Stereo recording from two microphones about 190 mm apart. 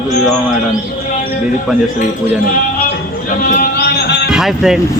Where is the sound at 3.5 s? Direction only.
50° left (ahead or behind).